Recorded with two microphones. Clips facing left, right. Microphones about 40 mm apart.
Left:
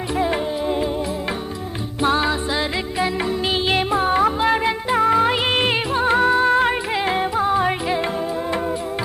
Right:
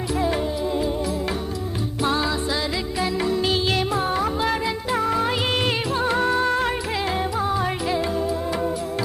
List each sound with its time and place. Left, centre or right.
0.2 s music: left
2.0 s music: left